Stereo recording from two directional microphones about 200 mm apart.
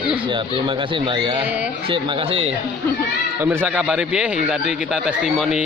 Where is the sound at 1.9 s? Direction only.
25° right (ahead or behind).